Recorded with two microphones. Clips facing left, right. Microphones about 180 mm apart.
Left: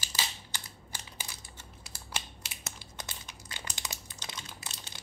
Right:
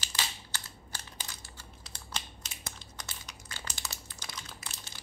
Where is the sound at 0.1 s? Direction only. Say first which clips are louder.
Even; 15° left (ahead or behind).